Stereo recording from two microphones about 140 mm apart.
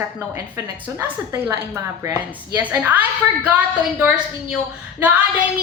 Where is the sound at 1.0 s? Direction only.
20° right (ahead or behind).